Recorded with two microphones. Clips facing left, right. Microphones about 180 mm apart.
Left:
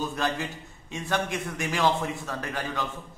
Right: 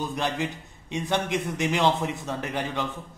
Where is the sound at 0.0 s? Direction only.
20° right (ahead or behind).